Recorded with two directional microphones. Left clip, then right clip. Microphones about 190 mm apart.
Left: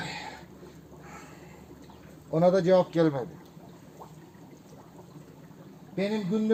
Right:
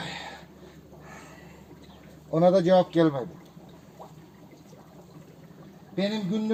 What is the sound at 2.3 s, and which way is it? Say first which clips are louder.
Speech: right 2 dB; 15° left (ahead or behind).